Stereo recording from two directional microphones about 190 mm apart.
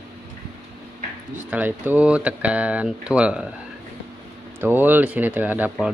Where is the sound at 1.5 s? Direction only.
10° right (ahead or behind).